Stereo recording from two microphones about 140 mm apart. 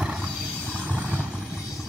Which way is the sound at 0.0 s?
5° right (ahead or behind).